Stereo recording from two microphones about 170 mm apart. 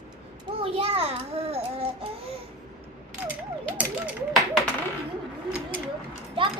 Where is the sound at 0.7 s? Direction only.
35° right (ahead or behind).